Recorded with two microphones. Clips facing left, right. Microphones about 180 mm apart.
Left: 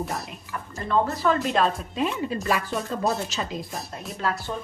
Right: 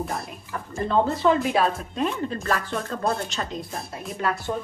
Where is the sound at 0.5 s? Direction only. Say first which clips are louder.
Right 2 dB; 25° right (ahead or behind).